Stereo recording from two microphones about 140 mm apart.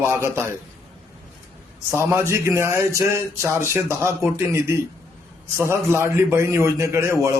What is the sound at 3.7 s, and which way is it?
Music, 20° right (ahead or behind).